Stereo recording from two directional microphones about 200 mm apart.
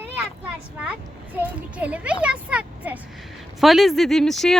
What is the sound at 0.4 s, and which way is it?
A child's voice, 5° right (ahead or behind).